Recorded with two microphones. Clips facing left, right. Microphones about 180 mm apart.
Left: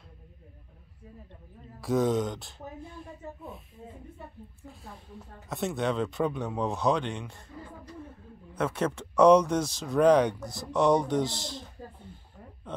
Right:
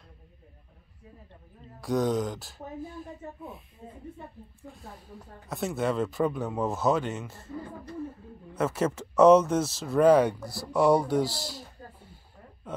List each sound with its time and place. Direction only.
1.8 s speech: centre (ahead or behind)
5.2 s speech: centre (ahead or behind)